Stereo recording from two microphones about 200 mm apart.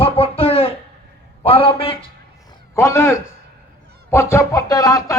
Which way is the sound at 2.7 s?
10° left (ahead or behind).